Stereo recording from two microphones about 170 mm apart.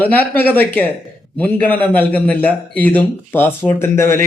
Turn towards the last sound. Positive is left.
turn(degrees=15)  # may be behind; listen again after turning